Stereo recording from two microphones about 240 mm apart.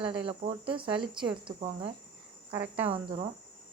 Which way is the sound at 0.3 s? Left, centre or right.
Right.